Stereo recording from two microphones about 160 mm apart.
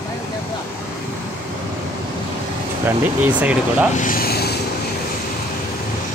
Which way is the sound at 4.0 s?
65° left (ahead or behind).